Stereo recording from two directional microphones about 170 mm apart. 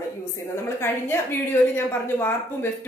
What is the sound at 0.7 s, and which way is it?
A woman's voice, 15° left (ahead or behind).